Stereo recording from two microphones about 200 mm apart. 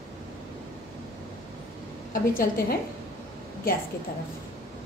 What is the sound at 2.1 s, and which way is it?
Speech, 45° left (ahead or behind).